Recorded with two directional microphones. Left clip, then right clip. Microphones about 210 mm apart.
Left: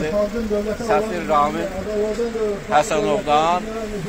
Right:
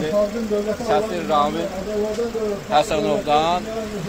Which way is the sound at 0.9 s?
Centre (ahead or behind).